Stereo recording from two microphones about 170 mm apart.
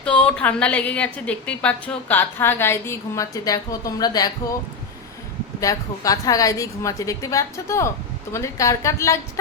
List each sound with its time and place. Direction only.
0.0 s a woman's voice: 5° left (ahead or behind); by 4.3 s 20° left (ahead or behind)
5.5 s a woman's voice: 20° left (ahead or behind)